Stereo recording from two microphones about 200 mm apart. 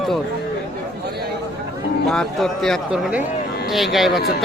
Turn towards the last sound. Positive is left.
turn(degrees=0)  # may be behind; listen again after turning